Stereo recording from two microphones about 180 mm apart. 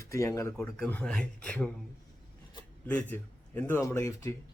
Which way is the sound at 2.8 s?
10° left (ahead or behind).